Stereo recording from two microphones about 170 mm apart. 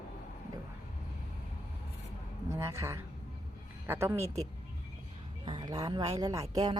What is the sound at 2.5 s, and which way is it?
A man's voice, 15° right (ahead or behind).